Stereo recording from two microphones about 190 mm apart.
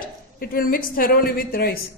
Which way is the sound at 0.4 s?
50° left (ahead or behind).